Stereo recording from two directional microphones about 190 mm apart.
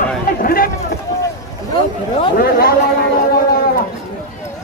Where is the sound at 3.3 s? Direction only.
50° left (ahead or behind).